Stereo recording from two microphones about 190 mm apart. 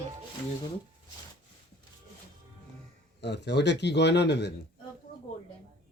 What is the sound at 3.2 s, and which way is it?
A man's voice, 65° left (ahead or behind).